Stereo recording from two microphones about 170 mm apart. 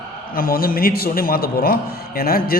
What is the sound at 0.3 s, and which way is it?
A man's voice, 60° left (ahead or behind).